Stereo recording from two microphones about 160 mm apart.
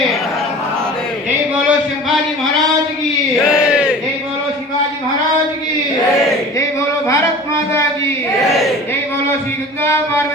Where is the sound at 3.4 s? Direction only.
5° right (ahead or behind).